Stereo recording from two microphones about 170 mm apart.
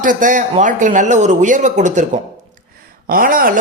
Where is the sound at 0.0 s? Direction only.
50° right (ahead or behind).